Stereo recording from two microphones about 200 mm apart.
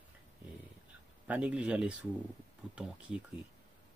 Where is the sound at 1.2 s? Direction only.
5° right (ahead or behind).